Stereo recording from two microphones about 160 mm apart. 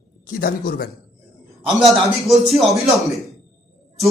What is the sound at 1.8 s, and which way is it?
Speech, centre (ahead or behind).